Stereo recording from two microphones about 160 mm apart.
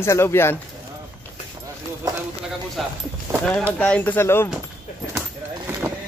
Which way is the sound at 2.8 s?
Centre (ahead or behind).